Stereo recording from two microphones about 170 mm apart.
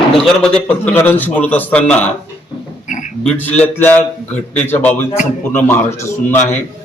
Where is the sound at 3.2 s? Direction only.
10° left (ahead or behind).